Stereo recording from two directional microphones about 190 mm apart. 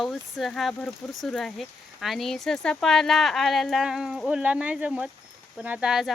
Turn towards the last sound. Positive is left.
turn(degrees=0)  # may be behind; listen again after turning